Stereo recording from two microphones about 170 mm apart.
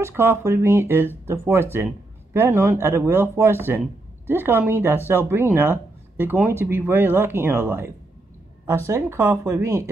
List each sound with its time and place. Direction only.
0.0 s speech: 15° right (ahead or behind)